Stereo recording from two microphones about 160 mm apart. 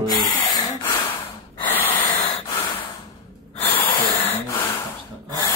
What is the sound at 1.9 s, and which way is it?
Snort, 35° left (ahead or behind).